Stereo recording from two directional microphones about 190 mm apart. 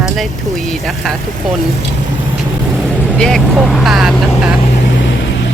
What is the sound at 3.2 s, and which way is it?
Speech, centre (ahead or behind).